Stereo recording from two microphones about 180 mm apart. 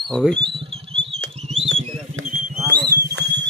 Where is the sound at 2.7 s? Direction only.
60° right (ahead or behind).